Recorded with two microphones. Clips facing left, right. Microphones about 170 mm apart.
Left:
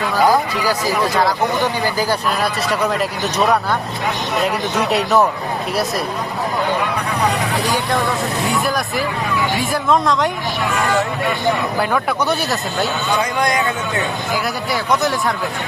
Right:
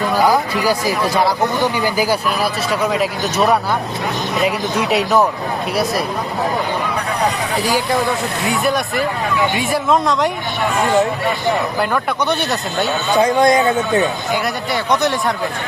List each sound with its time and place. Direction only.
0.7 s speech: 10° right (ahead or behind)
8.4 s speech: centre (ahead or behind)
12.3 s speech: centre (ahead or behind)
13.4 s speech: 25° right (ahead or behind)
14.3 s speech: centre (ahead or behind)